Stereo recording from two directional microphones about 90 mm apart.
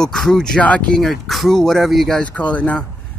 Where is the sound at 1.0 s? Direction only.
Centre (ahead or behind).